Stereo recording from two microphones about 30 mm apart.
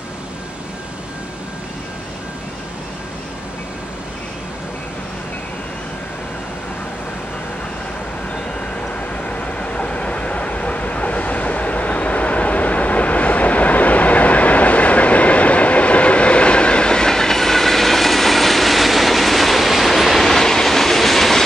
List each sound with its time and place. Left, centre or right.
9.2 s train: left; by 21.4 s centre